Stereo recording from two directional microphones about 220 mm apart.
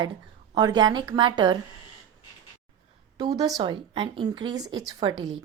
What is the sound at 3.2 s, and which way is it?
A woman's voice, 15° right (ahead or behind).